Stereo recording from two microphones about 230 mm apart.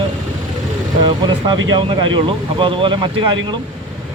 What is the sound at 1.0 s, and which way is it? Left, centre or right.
Speech, centre.